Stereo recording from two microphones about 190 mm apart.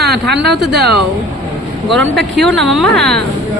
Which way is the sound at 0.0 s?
60° right (ahead or behind).